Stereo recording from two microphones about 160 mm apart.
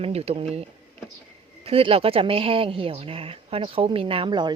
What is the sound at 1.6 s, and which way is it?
Speech, 35° right (ahead or behind).